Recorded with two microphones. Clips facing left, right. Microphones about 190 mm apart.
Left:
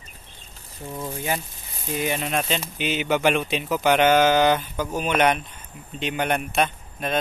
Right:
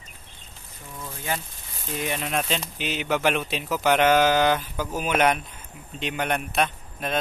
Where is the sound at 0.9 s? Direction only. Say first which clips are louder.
Left 6 dB; 25° left (ahead or behind).